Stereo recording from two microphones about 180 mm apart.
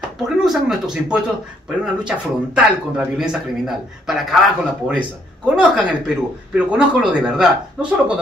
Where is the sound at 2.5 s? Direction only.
5° right (ahead or behind).